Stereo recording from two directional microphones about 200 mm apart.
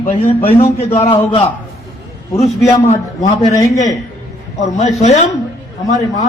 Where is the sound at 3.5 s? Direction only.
15° left (ahead or behind).